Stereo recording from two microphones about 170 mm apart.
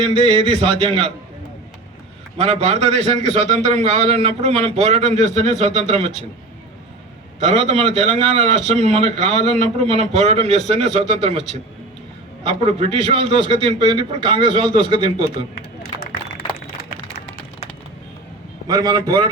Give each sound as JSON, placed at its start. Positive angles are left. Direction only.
{"t": 0.3, "sound": "a man's voice", "side_deg": -35}
{"t": 2.4, "sound": "a man's voice", "side_deg": -35}
{"t": 7.4, "sound": "a man's voice", "side_deg": -40}
{"t": 18.7, "sound": "a man's voice", "side_deg": -25}